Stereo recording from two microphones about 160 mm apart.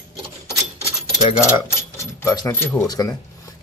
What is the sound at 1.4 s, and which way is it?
Speech, 15° left (ahead or behind).